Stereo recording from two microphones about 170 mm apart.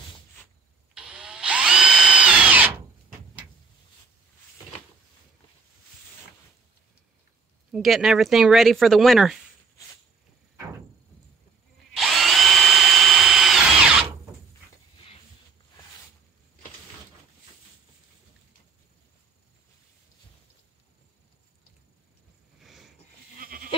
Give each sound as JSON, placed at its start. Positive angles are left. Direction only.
{"t": 0.9, "sound": "drill", "side_deg": -5}
{"t": 7.7, "sound": "speech", "side_deg": 0}
{"t": 11.9, "sound": "drill", "side_deg": 0}
{"t": 22.6, "sound": "a sound", "side_deg": 0}
{"t": 23.4, "sound": "goat", "side_deg": -55}